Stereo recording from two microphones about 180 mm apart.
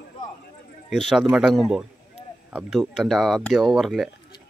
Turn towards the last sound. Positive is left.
turn(degrees=0)  # may be behind; listen again after turning